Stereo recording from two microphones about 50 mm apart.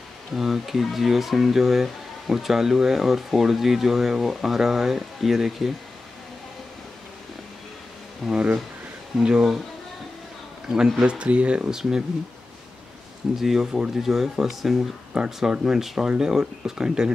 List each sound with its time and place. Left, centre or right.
0.3 s speech: centre
8.2 s speech: centre
9.2 s speech: centre
10.7 s speech: centre
11.0 s speech: right
11.7 s speech: centre
13.4 s speech: centre